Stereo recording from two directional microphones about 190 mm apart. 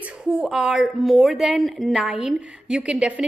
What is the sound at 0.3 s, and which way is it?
A woman's voice, 5° right (ahead or behind).